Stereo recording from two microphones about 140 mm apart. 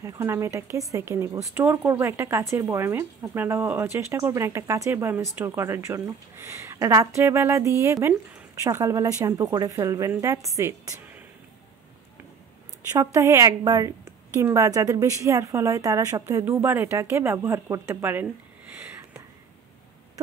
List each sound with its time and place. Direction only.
0.0 s speech: 20° right (ahead or behind)
12.9 s speech: 20° right (ahead or behind)
18.8 s a sound: 10° right (ahead or behind)